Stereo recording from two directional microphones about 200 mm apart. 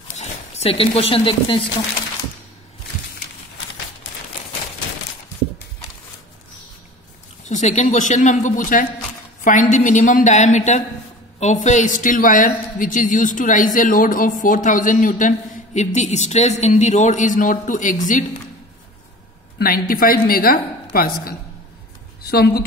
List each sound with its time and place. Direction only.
0.2 s speech: 30° left (ahead or behind)
7.4 s a man's voice: 35° left (ahead or behind)
19.6 s a woman's voice: 45° left (ahead or behind)